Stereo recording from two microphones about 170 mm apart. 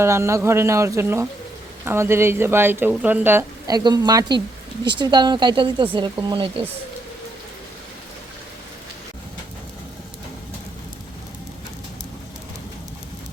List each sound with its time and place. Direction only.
0.0 s speech: 15° right (ahead or behind)